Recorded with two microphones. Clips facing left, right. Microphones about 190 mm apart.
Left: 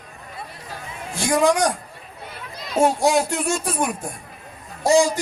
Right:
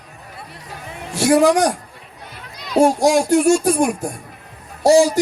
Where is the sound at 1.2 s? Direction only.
10° right (ahead or behind).